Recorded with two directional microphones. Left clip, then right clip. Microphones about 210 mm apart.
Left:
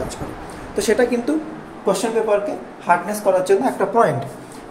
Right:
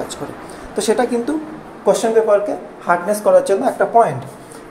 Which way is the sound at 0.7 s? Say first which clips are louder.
Right 1 dB; 15° right (ahead or behind).